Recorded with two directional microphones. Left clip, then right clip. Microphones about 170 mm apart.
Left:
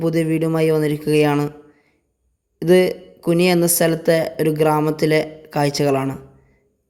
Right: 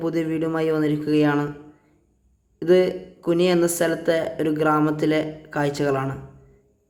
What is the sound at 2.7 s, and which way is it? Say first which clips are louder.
A man's voice: left 3 dB; 40° left (ahead or behind).